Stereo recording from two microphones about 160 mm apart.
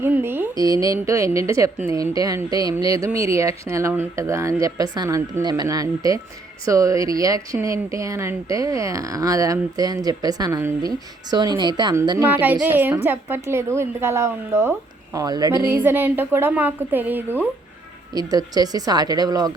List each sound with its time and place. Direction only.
0.0 s a woman's voice: 15° right (ahead or behind)
18.1 s speech: 25° right (ahead or behind)